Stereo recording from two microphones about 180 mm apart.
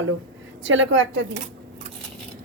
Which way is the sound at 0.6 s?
90° right.